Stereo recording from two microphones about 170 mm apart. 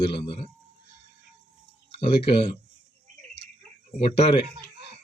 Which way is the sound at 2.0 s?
35° left (ahead or behind).